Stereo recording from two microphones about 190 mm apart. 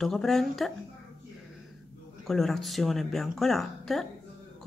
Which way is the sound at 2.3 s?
Centre (ahead or behind).